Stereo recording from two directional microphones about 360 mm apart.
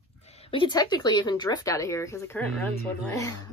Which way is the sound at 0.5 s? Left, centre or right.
Centre.